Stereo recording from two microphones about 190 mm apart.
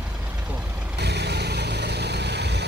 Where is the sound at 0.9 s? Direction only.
60° right (ahead or behind).